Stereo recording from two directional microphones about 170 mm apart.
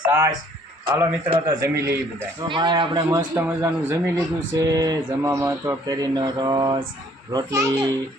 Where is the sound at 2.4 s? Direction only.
30° right (ahead or behind).